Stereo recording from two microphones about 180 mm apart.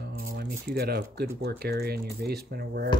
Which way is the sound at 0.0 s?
65° right (ahead or behind).